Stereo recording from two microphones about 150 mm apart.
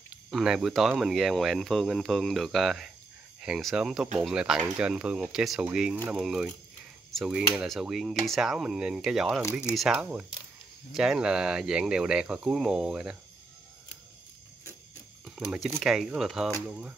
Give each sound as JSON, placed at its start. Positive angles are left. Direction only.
{"t": 0.1, "sound": "speech", "side_deg": 0}
{"t": 15.2, "sound": "speech", "side_deg": 0}